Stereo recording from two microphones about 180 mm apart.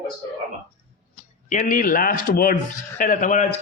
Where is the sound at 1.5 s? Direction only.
50° left (ahead or behind).